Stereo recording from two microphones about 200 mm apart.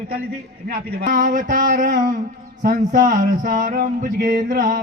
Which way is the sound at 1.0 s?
40° right (ahead or behind).